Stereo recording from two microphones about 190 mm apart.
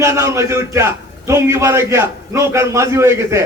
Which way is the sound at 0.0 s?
15° right (ahead or behind).